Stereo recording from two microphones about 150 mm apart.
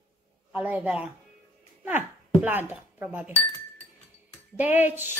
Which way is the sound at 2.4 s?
15° right (ahead or behind).